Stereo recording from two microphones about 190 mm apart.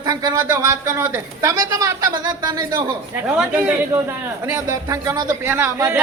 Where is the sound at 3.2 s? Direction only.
5° right (ahead or behind).